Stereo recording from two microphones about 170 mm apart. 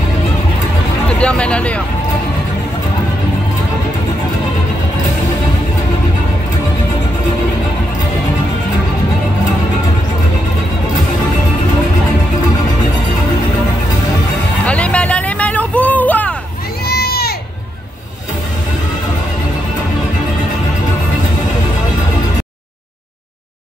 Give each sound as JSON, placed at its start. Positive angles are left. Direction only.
{"t": 1.0, "sound": "speech", "side_deg": 5}
{"t": 14.7, "sound": "music", "side_deg": 5}
{"t": 16.8, "sound": "a sound", "side_deg": 70}